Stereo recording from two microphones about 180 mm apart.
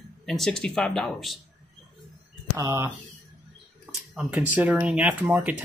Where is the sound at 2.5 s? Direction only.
15° right (ahead or behind).